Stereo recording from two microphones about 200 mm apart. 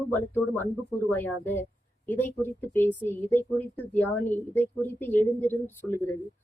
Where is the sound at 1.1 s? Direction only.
10° left (ahead or behind).